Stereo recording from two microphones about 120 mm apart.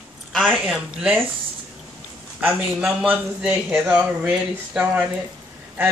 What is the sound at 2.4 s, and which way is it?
A man's voice, 10° right (ahead or behind).